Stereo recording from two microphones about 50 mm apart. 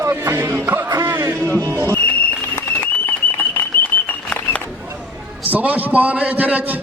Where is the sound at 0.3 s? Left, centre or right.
Right.